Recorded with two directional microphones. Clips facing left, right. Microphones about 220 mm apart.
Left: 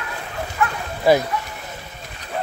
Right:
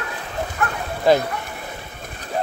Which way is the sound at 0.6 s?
55° right (ahead or behind).